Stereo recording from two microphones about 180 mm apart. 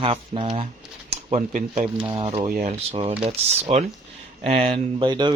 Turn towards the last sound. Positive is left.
turn(degrees=-25)  # may be behind; listen again after turning